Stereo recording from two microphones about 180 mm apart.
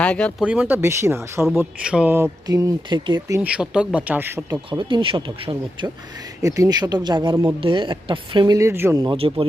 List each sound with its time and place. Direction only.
0.0 s speech: 5° left (ahead or behind)
0.4 s speech: 5° right (ahead or behind)
9.0 s speech: 30° right (ahead or behind)